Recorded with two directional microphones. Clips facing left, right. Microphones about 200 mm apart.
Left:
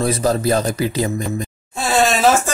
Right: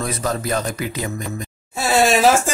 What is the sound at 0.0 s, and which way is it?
A man's voice, 30° left (ahead or behind).